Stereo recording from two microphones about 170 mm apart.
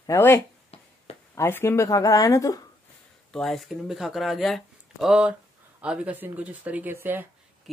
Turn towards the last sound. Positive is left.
turn(degrees=-10)  # may be behind; listen again after turning